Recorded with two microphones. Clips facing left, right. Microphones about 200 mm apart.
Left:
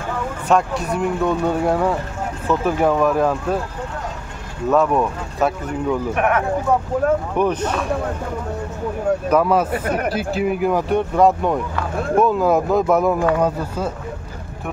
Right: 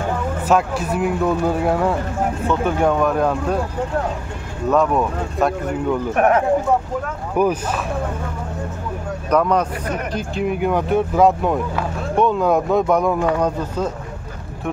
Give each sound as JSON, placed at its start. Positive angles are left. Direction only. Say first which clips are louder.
{"t": 0.5, "sound": "speech", "louder": "even", "side_deg": -5}
{"t": 4.6, "sound": "speech", "louder": "even", "side_deg": 0}
{"t": 6.1, "sound": "speech", "louder": "right 6 dB", "side_deg": -35}
{"t": 7.3, "sound": "speech", "louder": "right 1 dB", "side_deg": -5}
{"t": 9.3, "sound": "speech", "louder": "right 1 dB", "side_deg": 5}